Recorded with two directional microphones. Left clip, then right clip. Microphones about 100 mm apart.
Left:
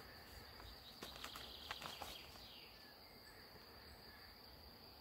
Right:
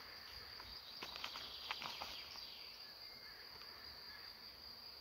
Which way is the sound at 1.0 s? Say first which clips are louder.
Right 4 dB; 50° right (ahead or behind).